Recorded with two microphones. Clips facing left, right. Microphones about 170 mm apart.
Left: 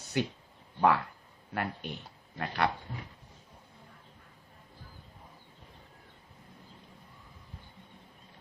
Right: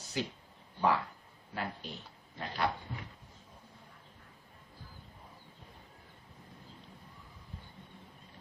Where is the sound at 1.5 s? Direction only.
65° left (ahead or behind).